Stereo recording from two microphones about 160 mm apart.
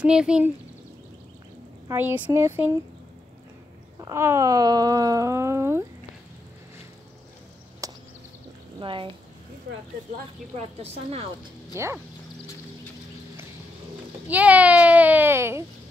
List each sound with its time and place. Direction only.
0.0 s speech: 5° right (ahead or behind)
1.9 s a child's voice: 15° right (ahead or behind)
4.0 s speech: 15° right (ahead or behind)
7.8 s a sound: 20° right (ahead or behind)
8.7 s speech: 30° right (ahead or behind)
10.8 s a woman's voice: 40° right (ahead or behind)
11.7 s a child's voice: 15° right (ahead or behind)
14.2 s a child's voice: 10° right (ahead or behind)